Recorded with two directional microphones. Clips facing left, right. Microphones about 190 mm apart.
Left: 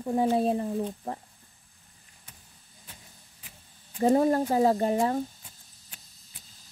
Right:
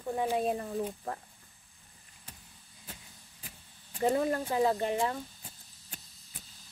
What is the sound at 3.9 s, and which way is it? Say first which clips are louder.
Speech: left 6 dB; 35° left (ahead or behind).